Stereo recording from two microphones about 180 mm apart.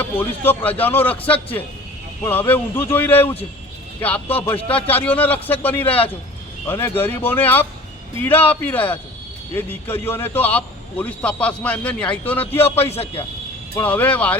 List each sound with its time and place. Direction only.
0.0 s a man's voice: 10° left (ahead or behind)
2.2 s a man's voice: 10° left (ahead or behind)
4.9 s a man's voice: 10° left (ahead or behind)
12.8 s a man's voice: 35° left (ahead or behind)
13.7 s a man's voice: 10° left (ahead or behind)